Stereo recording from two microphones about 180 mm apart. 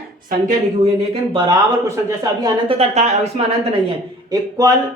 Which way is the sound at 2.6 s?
35° right (ahead or behind).